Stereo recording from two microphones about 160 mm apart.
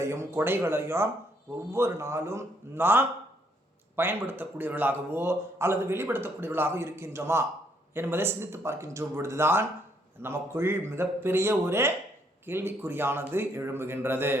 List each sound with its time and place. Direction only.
0.0 s a man's voice: 15° right (ahead or behind)